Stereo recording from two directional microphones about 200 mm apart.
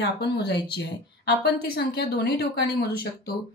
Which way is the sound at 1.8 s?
55° left (ahead or behind).